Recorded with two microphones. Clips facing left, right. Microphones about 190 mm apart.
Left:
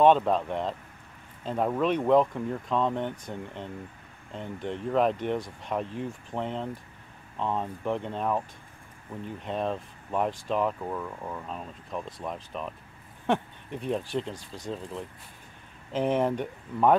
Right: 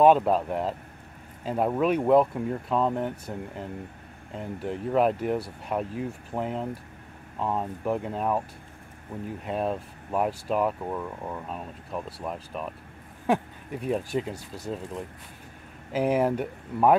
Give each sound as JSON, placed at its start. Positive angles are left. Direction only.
{"t": 0.0, "sound": "speech", "side_deg": -10}
{"t": 9.4, "sound": "speech", "side_deg": -10}
{"t": 15.9, "sound": "speech", "side_deg": -5}